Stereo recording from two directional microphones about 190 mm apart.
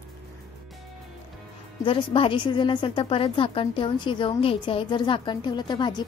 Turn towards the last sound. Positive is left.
turn(degrees=25)  # may be behind; listen again after turning